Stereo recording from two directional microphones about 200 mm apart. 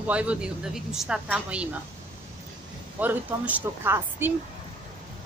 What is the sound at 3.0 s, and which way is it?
Speech, 10° right (ahead or behind).